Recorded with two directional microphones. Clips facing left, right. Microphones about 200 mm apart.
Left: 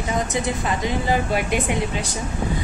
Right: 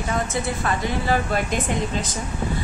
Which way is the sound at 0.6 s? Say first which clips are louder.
Left 1 dB; 15° left (ahead or behind).